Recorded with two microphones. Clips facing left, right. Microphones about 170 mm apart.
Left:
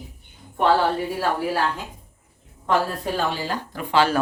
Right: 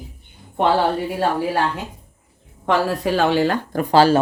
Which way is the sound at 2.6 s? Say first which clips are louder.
Right 4 dB; 90° right.